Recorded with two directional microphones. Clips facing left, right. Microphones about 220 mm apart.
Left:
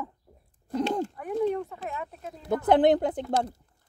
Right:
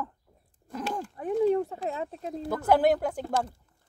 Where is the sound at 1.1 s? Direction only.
30° right (ahead or behind).